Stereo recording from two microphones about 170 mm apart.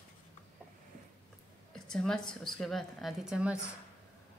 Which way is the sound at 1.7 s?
5° left (ahead or behind).